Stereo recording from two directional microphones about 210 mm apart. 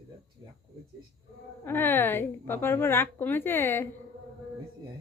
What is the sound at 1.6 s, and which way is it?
A woman's voice, 10° left (ahead or behind).